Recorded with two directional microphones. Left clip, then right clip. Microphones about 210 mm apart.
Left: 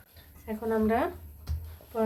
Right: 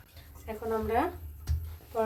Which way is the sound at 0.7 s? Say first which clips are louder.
Left 2 dB; 25° left (ahead or behind).